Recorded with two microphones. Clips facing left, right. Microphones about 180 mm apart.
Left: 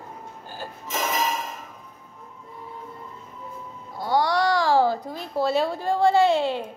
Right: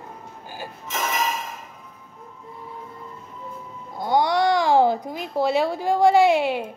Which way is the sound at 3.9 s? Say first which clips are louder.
Right 2 dB; 20° right (ahead or behind).